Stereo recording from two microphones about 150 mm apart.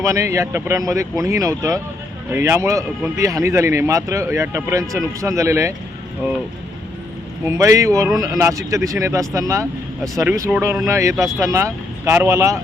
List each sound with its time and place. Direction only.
0.0 s speech: 20° right (ahead or behind)
7.4 s speech: 20° right (ahead or behind)